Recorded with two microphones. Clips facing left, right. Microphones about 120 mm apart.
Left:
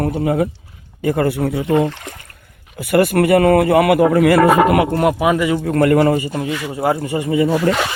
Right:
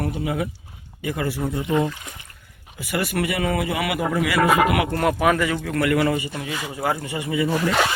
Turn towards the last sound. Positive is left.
turn(degrees=40)  # may be behind; listen again after turning